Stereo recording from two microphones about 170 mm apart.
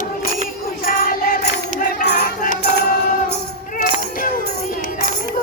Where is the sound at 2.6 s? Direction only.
75° left (ahead or behind).